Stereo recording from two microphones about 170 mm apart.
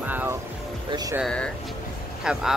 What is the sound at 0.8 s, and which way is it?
Speech, 25° right (ahead or behind).